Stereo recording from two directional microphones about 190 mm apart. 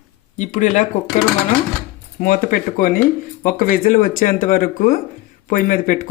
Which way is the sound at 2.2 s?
45° left (ahead or behind).